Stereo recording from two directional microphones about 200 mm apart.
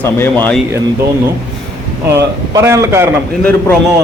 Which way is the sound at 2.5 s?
15° right (ahead or behind).